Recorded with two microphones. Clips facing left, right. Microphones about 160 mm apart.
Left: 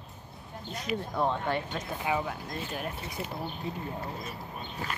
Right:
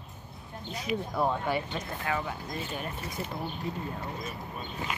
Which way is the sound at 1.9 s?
15° left (ahead or behind).